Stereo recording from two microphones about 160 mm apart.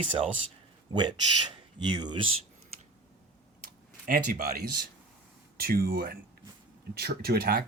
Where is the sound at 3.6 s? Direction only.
60° right (ahead or behind).